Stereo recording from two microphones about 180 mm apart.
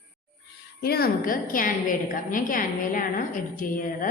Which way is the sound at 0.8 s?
60° left (ahead or behind).